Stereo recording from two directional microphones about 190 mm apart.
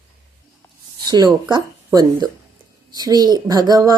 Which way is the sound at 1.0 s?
20° right (ahead or behind).